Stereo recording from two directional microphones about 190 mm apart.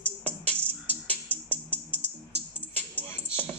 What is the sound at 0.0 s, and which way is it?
Music, 35° right (ahead or behind).